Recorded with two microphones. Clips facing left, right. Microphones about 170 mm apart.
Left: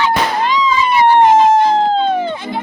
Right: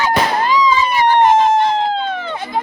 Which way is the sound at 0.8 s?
45° right (ahead or behind).